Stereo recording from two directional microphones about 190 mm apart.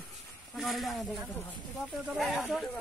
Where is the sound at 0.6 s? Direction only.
Centre (ahead or behind).